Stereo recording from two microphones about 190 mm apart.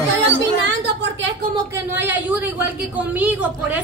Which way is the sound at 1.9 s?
10° right (ahead or behind).